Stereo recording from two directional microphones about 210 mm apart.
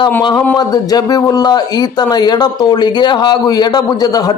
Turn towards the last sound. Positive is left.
turn(degrees=20)  # may be behind; listen again after turning